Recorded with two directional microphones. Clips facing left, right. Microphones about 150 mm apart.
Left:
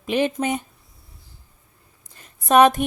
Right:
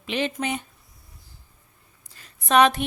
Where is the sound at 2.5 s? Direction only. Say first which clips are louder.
Left 4 dB; 45° left (ahead or behind).